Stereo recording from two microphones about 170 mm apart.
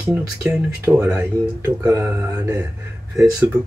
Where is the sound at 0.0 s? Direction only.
10° right (ahead or behind).